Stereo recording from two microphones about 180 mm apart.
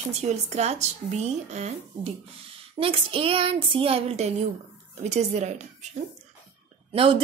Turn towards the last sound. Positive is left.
turn(degrees=-30)  # may be behind; listen again after turning